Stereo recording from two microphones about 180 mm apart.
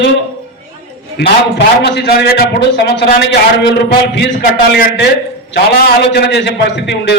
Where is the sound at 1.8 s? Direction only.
65° left (ahead or behind).